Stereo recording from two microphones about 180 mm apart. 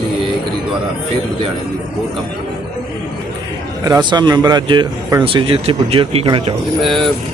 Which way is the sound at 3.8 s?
20° right (ahead or behind).